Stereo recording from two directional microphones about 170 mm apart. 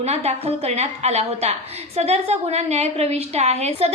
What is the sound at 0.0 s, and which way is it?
A woman's voice, 40° right (ahead or behind).